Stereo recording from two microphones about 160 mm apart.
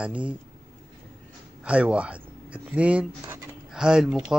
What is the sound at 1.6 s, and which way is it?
Speech, 5° right (ahead or behind).